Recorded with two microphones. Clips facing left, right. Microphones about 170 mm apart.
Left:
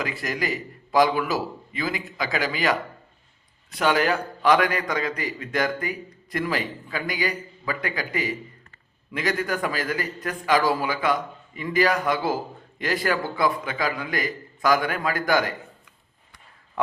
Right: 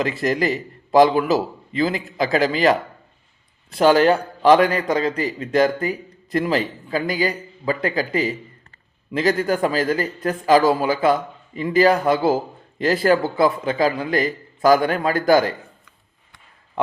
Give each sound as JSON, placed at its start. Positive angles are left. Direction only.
{"t": 0.0, "sound": "a man's voice", "side_deg": -30}
{"t": 3.7, "sound": "a man's voice", "side_deg": -30}